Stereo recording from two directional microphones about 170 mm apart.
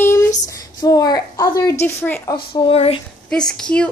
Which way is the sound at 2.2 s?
25° left (ahead or behind).